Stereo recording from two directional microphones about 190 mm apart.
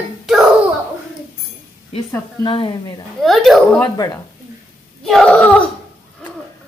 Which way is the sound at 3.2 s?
Centre (ahead or behind).